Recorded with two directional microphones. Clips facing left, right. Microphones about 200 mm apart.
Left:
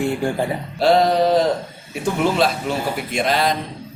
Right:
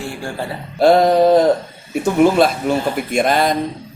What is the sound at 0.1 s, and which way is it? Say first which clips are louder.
Speech: left 5 dB; 20° left (ahead or behind).